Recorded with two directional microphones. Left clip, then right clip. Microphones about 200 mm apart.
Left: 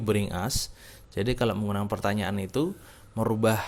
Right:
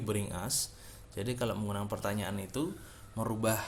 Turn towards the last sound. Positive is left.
turn(degrees=40)  # may be behind; listen again after turning